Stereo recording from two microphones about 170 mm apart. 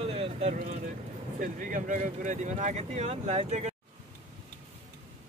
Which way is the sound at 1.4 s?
50° right (ahead or behind).